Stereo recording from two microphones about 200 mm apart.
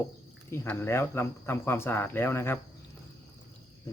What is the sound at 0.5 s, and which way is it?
Speech, 10° left (ahead or behind).